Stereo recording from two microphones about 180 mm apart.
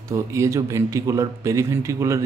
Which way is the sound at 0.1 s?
15° right (ahead or behind).